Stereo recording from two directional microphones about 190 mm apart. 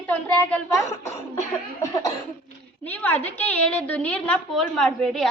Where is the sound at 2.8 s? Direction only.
10° left (ahead or behind).